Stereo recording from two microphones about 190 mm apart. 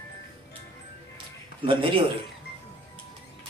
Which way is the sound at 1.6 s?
25° right (ahead or behind).